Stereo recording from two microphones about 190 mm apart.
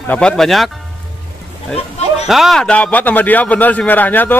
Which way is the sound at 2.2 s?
Centre (ahead or behind).